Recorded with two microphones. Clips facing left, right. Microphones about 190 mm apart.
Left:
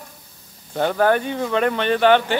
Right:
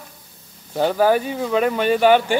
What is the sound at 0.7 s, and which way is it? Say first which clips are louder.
Speech: right 1 dB; 10° right (ahead or behind).